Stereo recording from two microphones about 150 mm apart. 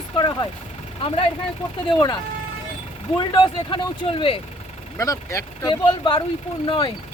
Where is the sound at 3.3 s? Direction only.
30° left (ahead or behind).